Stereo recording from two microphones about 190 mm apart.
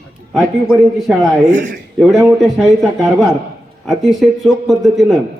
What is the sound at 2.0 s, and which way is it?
A man's voice, centre (ahead or behind).